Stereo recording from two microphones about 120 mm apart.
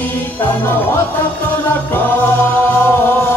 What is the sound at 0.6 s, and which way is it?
Music, 20° left (ahead or behind).